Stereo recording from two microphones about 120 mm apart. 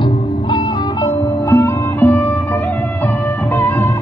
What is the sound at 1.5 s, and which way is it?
Music, 20° left (ahead or behind).